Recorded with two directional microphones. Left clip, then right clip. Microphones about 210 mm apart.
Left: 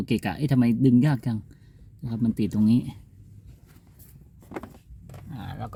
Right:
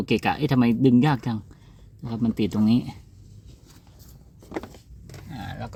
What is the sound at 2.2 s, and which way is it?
Speech, 30° left (ahead or behind).